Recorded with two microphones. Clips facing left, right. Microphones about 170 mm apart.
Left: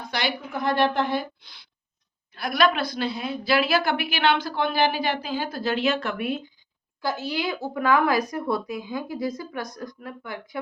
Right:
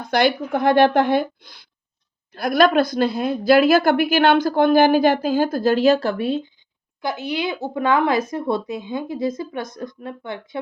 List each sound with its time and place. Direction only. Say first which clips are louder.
0.1 s a woman's voice: right 11 dB; 50° right (ahead or behind); by 6.4 s 30° right (ahead or behind)
7.0 s speech: right 3 dB; 20° right (ahead or behind)